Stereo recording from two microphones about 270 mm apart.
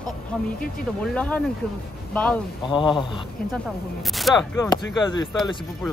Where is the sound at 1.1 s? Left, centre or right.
Centre.